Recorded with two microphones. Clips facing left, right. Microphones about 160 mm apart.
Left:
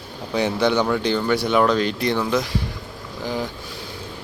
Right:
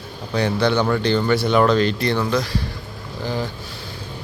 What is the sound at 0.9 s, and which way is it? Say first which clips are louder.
Speech: right 2 dB; 5° left (ahead or behind).